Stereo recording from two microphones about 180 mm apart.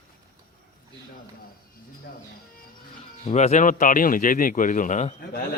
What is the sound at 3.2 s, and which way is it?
A man's voice, 35° left (ahead or behind).